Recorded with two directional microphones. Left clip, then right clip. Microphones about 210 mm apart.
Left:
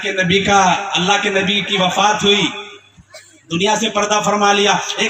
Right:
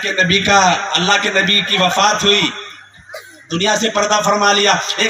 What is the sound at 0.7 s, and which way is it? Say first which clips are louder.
A man's voice: right 1 dB; 20° right (ahead or behind).